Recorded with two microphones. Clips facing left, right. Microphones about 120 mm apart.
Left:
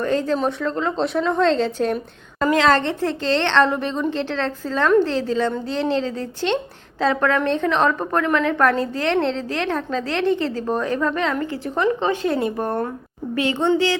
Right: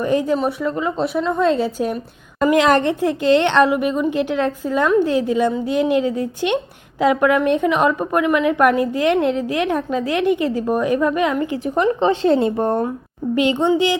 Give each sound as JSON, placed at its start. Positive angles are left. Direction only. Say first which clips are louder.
{"t": 0.0, "sound": "a woman's voice", "louder": "right 2 dB", "side_deg": -15}